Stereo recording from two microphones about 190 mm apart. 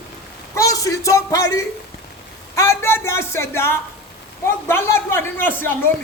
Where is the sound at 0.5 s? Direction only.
15° left (ahead or behind).